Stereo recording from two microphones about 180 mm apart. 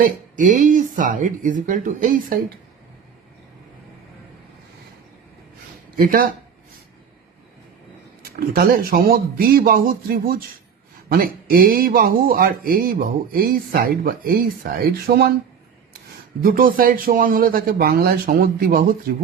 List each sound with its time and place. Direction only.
0.0 s speech: 45° right (ahead or behind)
6.0 s speech: 55° right (ahead or behind)
8.2 s speech: 55° right (ahead or behind)
16.4 s speech: 50° right (ahead or behind)